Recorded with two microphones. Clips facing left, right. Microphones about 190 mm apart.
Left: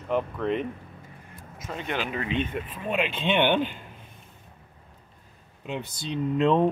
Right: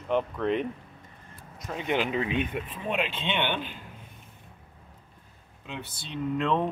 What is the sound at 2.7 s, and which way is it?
Speech, centre (ahead or behind).